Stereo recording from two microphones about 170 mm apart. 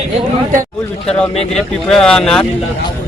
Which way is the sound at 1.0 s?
5° left (ahead or behind).